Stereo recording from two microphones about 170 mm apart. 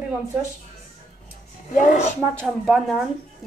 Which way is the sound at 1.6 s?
45° left (ahead or behind).